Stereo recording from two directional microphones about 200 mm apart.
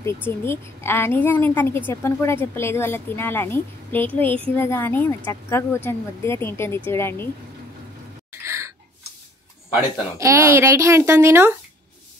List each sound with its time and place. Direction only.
0.0 s a woman's voice: 10° left (ahead or behind)
8.3 s a sound: 15° right (ahead or behind)
10.1 s speech: 15° right (ahead or behind)